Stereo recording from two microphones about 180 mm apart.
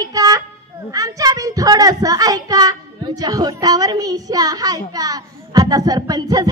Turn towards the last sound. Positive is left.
turn(degrees=-20)  # may be behind; listen again after turning